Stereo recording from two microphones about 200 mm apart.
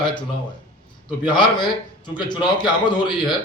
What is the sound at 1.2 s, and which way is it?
A man's voice, 25° left (ahead or behind).